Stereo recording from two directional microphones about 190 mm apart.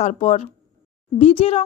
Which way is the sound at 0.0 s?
35° left (ahead or behind).